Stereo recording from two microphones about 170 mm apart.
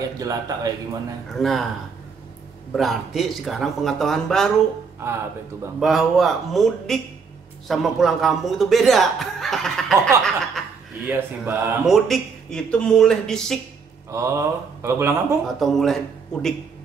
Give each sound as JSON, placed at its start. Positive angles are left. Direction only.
{"t": 0.2, "sound": "a man's voice", "side_deg": -20}
{"t": 1.3, "sound": "speech", "side_deg": 0}
{"t": 2.7, "sound": "speech", "side_deg": 0}
{"t": 5.0, "sound": "speech", "side_deg": -15}
{"t": 5.8, "sound": "speech", "side_deg": 0}
{"t": 11.1, "sound": "speech", "side_deg": -10}
{"t": 14.1, "sound": "speech", "side_deg": -15}
{"t": 15.4, "sound": "speech", "side_deg": 0}